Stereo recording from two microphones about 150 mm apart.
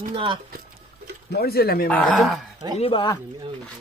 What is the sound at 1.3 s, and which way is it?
Speech, 90° left.